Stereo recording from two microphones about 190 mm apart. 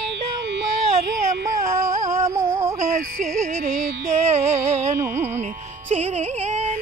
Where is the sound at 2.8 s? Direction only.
40° right (ahead or behind).